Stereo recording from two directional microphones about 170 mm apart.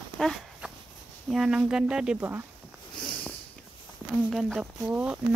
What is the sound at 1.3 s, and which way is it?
Speech, 5° right (ahead or behind).